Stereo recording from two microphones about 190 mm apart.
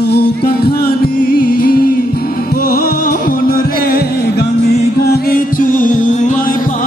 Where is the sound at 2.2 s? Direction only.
50° left (ahead or behind).